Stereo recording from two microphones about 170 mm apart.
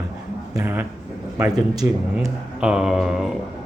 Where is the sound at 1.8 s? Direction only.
15° right (ahead or behind).